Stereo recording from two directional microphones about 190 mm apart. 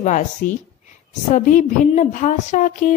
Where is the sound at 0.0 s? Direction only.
40° left (ahead or behind).